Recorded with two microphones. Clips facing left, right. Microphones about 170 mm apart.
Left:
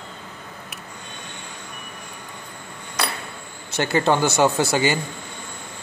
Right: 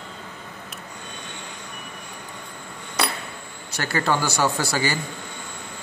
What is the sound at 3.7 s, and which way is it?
Speech, 20° left (ahead or behind).